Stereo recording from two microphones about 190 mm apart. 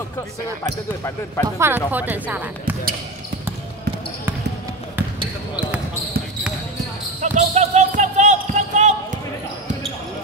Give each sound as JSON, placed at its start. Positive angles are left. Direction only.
{"t": 1.6, "sound": "speech", "side_deg": -10}
{"t": 7.2, "sound": "basketball bounce", "side_deg": -40}